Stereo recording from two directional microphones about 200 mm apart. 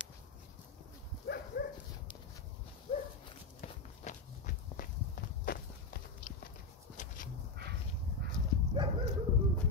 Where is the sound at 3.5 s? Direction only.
40° left (ahead or behind).